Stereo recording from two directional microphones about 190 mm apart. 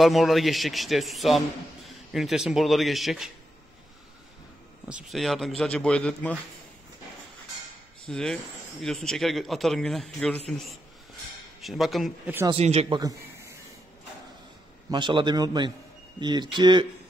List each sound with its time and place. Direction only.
0.0 s a man's voice: centre (ahead or behind)
4.8 s a man's voice: centre (ahead or behind)
8.1 s a man's voice: centre (ahead or behind)
11.6 s a man's voice: centre (ahead or behind)
12.4 s speech: 35° right (ahead or behind)
13.0 s a sound: 15° right (ahead or behind)
14.9 s a man's voice: 25° right (ahead or behind)